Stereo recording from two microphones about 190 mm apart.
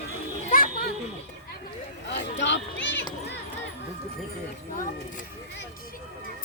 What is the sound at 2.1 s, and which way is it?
Speech, 70° left (ahead or behind).